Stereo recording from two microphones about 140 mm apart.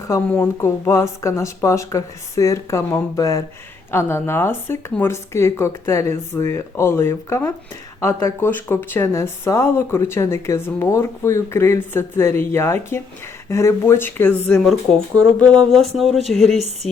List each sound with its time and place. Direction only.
0.3 s speech: 15° left (ahead or behind); by 16.6 s centre (ahead or behind)